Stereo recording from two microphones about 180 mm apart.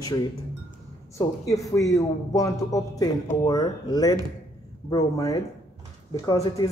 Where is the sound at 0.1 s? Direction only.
20° left (ahead or behind).